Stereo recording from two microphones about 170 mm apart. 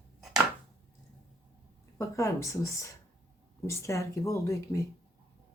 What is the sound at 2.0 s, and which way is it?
Speech, 15° left (ahead or behind).